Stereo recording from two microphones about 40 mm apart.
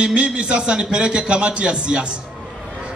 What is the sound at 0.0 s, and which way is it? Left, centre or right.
A man's voice, right.